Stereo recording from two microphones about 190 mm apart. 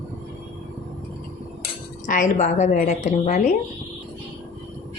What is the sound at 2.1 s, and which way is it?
A woman's voice, 40° left (ahead or behind).